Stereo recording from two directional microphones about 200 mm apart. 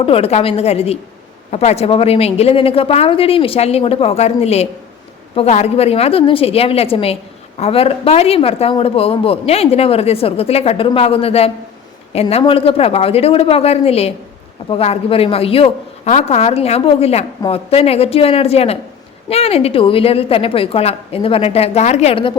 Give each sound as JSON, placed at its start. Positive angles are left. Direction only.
{"t": 0.0, "sound": "a woman's voice", "side_deg": 30}